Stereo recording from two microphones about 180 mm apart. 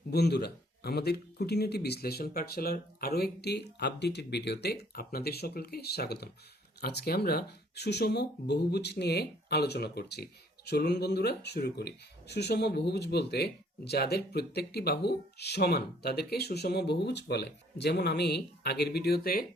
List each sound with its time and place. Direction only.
0.1 s speech: 65° left (ahead or behind)